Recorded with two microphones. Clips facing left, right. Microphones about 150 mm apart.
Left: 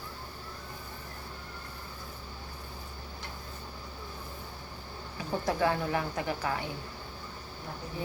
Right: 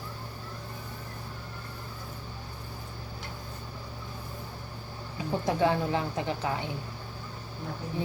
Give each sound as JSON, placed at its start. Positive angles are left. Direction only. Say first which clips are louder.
{"t": 5.1, "sound": "speech", "louder": "right 2 dB", "side_deg": -20}